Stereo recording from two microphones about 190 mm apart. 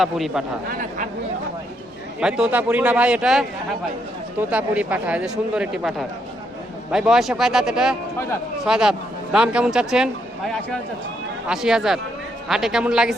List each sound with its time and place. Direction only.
0.0 s speech: centre (ahead or behind)
0.7 s speech: 45° right (ahead or behind)
2.2 s speech: 5° right (ahead or behind)